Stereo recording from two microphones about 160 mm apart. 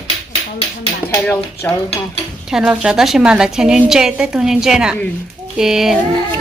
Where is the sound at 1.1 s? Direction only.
15° left (ahead or behind).